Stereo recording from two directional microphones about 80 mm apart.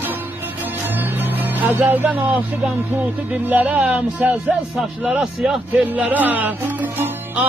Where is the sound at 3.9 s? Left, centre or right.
Centre.